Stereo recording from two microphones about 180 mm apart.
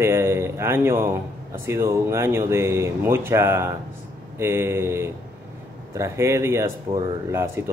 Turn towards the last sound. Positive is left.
turn(degrees=-15)  # may be behind; listen again after turning